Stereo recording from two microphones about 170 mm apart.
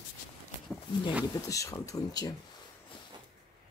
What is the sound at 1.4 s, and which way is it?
Speech, 20° left (ahead or behind).